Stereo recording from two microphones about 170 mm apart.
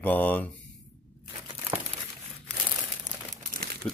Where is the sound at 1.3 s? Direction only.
30° right (ahead or behind).